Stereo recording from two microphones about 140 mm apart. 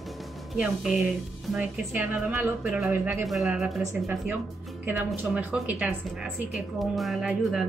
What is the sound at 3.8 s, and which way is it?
Speech, 20° right (ahead or behind).